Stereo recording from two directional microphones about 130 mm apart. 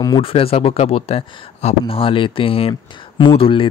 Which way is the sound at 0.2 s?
45° left (ahead or behind).